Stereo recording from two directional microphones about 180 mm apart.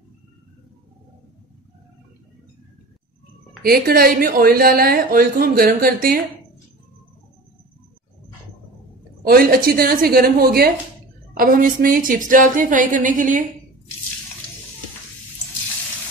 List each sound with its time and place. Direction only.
3.6 s a woman's voice: 55° right (ahead or behind)
9.2 s a woman's voice: 55° right (ahead or behind)